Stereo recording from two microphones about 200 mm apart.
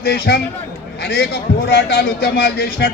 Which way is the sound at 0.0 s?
55° left (ahead or behind).